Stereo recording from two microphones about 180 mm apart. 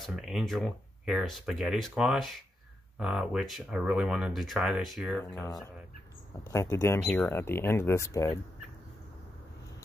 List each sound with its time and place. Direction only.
0.0 s speech: centre (ahead or behind)
5.2 s speech: 15° left (ahead or behind)